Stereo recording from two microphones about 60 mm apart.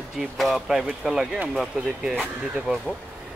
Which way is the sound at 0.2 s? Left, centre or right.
Centre.